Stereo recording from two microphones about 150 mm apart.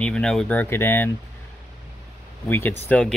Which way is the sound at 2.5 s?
15° left (ahead or behind).